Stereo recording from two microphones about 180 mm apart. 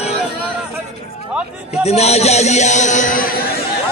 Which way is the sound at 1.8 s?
35° left (ahead or behind).